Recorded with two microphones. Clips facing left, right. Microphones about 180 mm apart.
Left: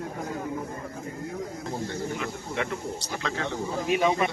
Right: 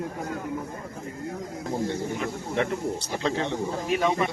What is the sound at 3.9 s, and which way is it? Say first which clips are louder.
Speech: left 1 dB; 15° left (ahead or behind).